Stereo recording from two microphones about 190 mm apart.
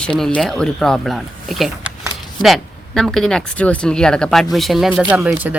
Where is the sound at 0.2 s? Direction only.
5° left (ahead or behind).